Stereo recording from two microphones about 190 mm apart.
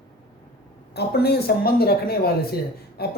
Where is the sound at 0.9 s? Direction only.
55° left (ahead or behind).